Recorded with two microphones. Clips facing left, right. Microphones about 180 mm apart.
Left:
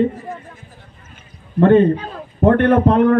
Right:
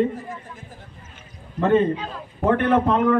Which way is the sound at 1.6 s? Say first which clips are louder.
Left 7 dB; 55° left (ahead or behind).